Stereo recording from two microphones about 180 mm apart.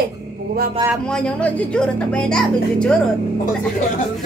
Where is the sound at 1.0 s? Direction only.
5° left (ahead or behind).